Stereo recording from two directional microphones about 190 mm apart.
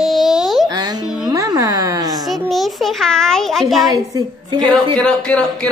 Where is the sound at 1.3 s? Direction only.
20° right (ahead or behind).